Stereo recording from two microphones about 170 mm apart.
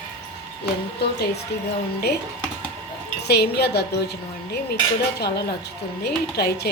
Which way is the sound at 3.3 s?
70° left (ahead or behind).